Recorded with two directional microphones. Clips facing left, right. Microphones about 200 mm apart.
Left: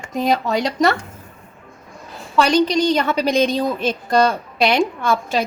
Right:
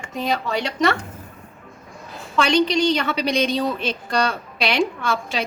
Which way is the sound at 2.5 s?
40° left (ahead or behind).